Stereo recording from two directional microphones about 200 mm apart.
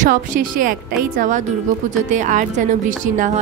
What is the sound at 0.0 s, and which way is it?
Speech, 40° right (ahead or behind).